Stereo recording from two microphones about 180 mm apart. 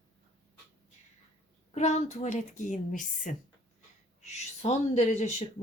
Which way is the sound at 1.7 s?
40° left (ahead or behind).